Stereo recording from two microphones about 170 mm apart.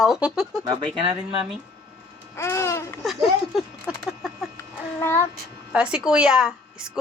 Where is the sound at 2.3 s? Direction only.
15° left (ahead or behind).